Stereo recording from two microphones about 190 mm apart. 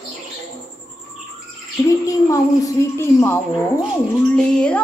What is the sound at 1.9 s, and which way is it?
Speech, 15° left (ahead or behind).